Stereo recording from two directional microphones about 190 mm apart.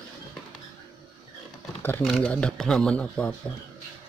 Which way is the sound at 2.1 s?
5° left (ahead or behind).